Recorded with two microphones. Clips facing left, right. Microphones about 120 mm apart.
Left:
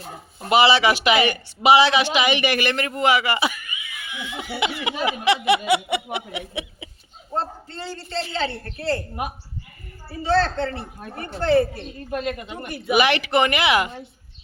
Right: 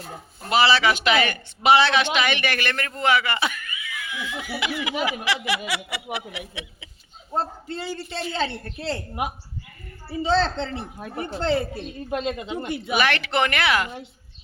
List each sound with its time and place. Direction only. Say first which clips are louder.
0.4 s speech: left 3 dB; 15° left (ahead or behind)
7.3 s a man's voice: right 1 dB; 10° right (ahead or behind)
12.9 s speech: left 5 dB; 15° left (ahead or behind)